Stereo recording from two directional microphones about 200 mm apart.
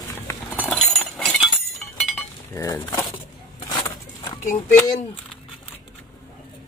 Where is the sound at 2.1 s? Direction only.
15° left (ahead or behind).